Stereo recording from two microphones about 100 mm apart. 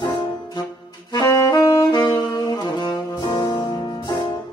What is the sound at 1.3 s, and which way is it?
Saxophone, 30° left (ahead or behind).